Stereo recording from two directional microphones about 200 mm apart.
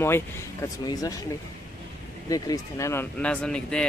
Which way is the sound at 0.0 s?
15° left (ahead or behind).